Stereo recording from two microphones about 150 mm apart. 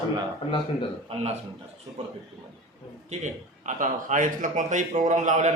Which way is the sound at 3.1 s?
55° right (ahead or behind).